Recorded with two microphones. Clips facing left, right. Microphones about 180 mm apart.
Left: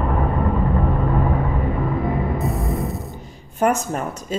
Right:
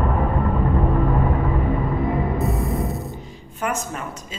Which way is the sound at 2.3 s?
Centre (ahead or behind).